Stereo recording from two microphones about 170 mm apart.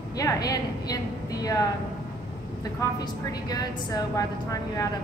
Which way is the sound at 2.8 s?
20° left (ahead or behind).